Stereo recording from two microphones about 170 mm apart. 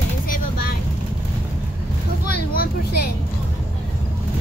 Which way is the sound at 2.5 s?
65° left (ahead or behind).